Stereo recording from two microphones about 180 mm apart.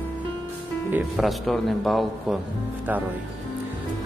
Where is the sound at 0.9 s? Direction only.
5° right (ahead or behind).